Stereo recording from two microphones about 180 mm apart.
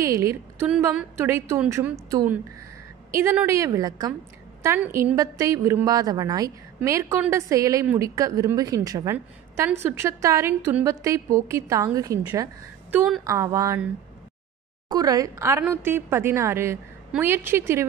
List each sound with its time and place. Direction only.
0.0 s a woman's voice: 15° right (ahead or behind)
14.9 s a woman's voice: 20° right (ahead or behind)